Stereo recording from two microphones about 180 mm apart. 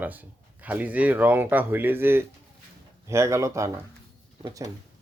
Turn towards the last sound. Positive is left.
turn(degrees=-20)  # may be behind; listen again after turning